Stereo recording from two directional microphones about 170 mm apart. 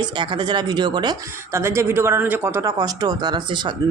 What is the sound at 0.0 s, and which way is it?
Speech, 25° right (ahead or behind).